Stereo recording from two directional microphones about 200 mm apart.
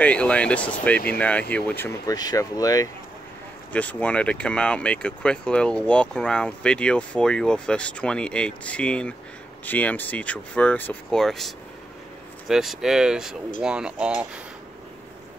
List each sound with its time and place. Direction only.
0.0 s speech: 5° left (ahead or behind)
3.7 s speech: 5° left (ahead or behind)